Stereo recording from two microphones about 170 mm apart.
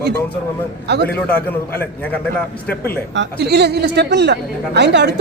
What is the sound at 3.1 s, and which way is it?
A woman's voice, 85° right.